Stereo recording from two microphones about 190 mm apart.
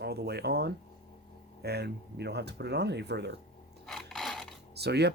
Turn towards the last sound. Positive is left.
turn(degrees=-60)  # may be behind; listen again after turning